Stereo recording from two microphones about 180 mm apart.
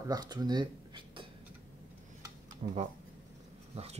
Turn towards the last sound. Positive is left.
turn(degrees=-35)  # may be behind; listen again after turning